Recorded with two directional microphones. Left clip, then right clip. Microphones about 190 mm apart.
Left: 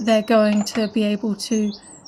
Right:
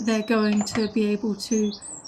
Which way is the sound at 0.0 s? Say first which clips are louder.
Left 7 dB; 45° left (ahead or behind).